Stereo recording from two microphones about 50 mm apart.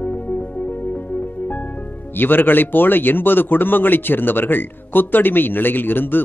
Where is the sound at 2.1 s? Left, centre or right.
Left.